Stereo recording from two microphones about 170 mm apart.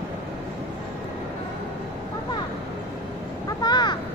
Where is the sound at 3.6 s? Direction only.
25° left (ahead or behind).